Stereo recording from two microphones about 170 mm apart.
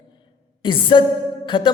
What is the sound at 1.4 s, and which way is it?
Music, 30° left (ahead or behind).